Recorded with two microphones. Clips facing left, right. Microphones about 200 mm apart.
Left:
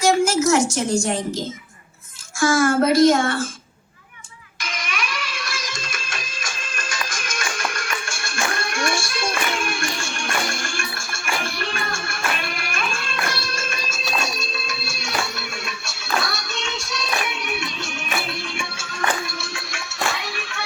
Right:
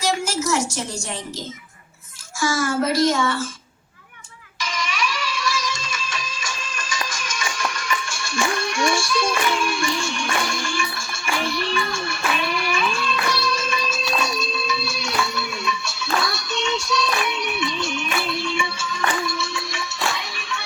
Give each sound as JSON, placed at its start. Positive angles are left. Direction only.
{"t": 0.0, "sound": "a sound", "side_deg": 50}
{"t": 2.4, "sound": "a child's voice", "side_deg": 50}
{"t": 4.6, "sound": "music", "side_deg": 55}
{"t": 18.3, "sound": "music", "side_deg": 55}